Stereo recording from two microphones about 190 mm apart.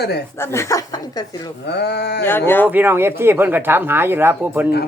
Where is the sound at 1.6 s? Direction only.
60° left (ahead or behind).